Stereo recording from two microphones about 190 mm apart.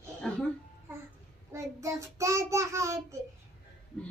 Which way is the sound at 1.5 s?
15° right (ahead or behind).